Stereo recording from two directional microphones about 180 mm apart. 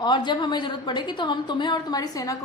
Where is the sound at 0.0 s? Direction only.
25° left (ahead or behind).